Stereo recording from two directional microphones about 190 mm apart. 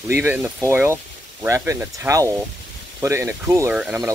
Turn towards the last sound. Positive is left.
turn(degrees=-10)  # may be behind; listen again after turning